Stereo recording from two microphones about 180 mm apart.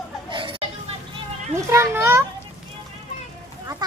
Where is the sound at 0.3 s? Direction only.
30° right (ahead or behind).